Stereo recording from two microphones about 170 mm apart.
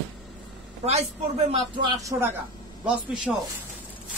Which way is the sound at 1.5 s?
25° right (ahead or behind).